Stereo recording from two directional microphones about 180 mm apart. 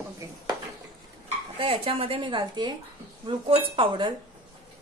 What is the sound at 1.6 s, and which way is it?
A woman's voice, 30° right (ahead or behind).